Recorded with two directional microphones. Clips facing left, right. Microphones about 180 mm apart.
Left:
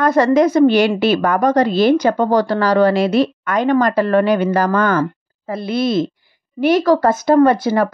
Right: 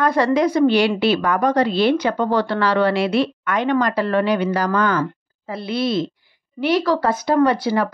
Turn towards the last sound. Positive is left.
turn(degrees=45)  # may be behind; listen again after turning